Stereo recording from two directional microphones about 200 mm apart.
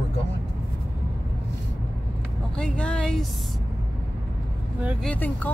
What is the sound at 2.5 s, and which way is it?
Speech, 5° left (ahead or behind).